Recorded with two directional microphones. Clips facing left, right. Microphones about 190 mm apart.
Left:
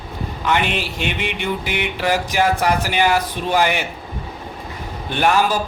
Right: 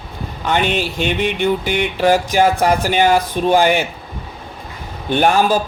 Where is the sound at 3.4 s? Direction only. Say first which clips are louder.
Right 8 dB; 40° right (ahead or behind).